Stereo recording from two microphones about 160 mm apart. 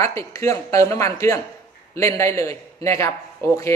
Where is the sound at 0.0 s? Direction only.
20° left (ahead or behind).